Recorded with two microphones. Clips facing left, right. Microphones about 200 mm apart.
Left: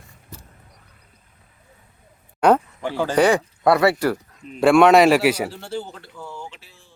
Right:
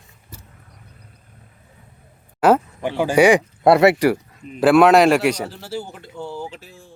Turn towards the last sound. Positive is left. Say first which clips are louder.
# right 6 dB
turn(degrees=-45)  # may be behind; listen again after turning